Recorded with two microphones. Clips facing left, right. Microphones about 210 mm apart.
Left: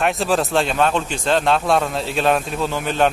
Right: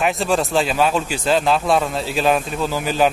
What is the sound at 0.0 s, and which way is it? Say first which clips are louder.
A man's voice: even; centre (ahead or behind).